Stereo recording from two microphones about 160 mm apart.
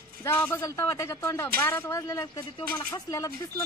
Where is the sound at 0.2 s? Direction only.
15° left (ahead or behind).